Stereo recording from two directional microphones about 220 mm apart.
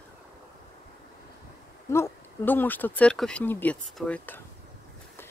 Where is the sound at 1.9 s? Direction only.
10° left (ahead or behind).